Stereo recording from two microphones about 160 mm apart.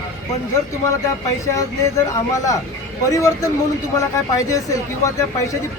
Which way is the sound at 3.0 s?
20° left (ahead or behind).